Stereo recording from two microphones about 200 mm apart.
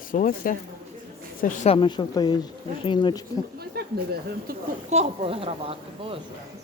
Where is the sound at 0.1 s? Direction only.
45° left (ahead or behind); by 3.2 s 20° left (ahead or behind).